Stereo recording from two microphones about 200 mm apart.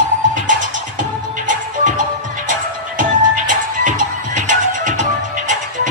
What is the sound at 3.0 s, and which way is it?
Music, 40° right (ahead or behind).